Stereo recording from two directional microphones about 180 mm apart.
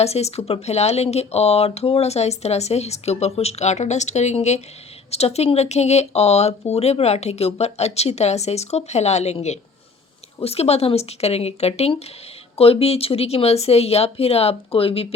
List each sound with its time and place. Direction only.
0.0 s speech: 35° left (ahead or behind)